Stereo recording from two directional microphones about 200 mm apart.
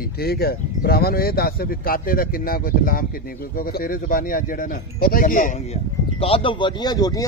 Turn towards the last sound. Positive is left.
turn(degrees=20)  # may be behind; listen again after turning